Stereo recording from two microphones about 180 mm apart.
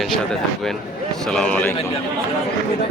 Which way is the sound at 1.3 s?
5° left (ahead or behind).